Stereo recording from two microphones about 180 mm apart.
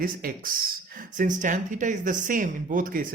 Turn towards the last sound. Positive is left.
turn(degrees=-50)  # may be behind; listen again after turning